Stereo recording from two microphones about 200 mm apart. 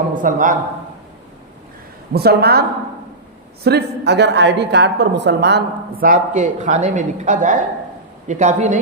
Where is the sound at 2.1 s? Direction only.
50° right (ahead or behind).